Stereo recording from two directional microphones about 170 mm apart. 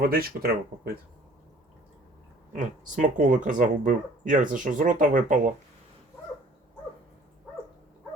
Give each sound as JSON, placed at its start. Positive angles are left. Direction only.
{"t": 0.0, "sound": "speech", "side_deg": -65}
{"t": 2.6, "sound": "speech", "side_deg": -45}